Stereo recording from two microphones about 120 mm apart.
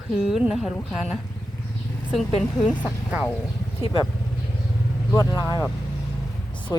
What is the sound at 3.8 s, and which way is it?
Speech, 45° left (ahead or behind).